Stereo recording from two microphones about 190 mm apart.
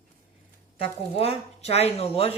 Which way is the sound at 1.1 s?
30° left (ahead or behind).